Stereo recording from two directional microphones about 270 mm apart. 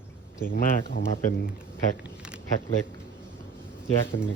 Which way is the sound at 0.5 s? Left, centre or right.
Left.